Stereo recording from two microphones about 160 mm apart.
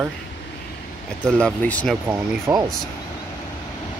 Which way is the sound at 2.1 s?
25° right (ahead or behind).